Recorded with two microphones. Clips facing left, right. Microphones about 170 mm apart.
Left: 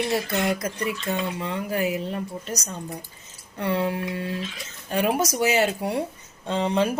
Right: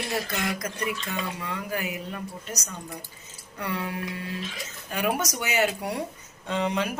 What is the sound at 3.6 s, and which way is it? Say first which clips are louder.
Speech: left 6 dB; 30° left (ahead or behind).